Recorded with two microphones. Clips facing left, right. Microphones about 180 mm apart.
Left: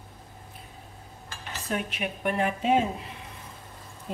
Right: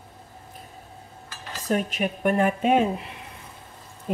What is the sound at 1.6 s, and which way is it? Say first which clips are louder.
A woman's voice: right 6 dB; 45° right (ahead or behind).